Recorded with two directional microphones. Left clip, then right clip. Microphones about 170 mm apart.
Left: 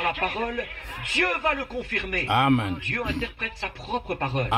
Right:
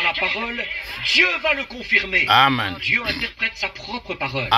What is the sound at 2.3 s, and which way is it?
Speech, 15° left (ahead or behind).